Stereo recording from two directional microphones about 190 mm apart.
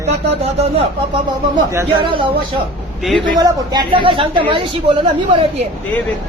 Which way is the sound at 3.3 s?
20° right (ahead or behind).